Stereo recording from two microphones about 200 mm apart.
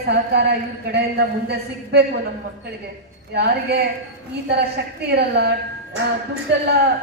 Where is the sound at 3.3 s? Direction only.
55° right (ahead or behind).